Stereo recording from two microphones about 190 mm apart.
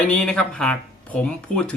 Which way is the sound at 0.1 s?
5° left (ahead or behind).